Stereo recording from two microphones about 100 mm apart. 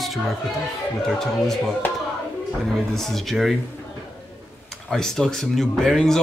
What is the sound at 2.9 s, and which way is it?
Speech, 5° left (ahead or behind).